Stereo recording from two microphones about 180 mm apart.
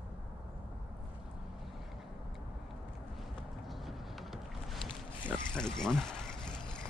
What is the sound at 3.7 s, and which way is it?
Boat, centre (ahead or behind).